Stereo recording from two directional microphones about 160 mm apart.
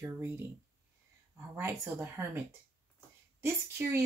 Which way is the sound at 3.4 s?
15° right (ahead or behind).